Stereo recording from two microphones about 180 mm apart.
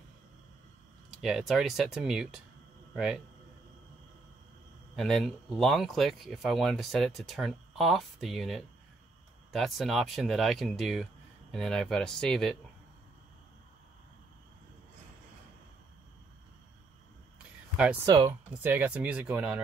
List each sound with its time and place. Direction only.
1.2 s speech: centre (ahead or behind)
4.9 s speech: centre (ahead or behind)
18.0 s speech: 20° right (ahead or behind)
18.5 s speech: 10° right (ahead or behind)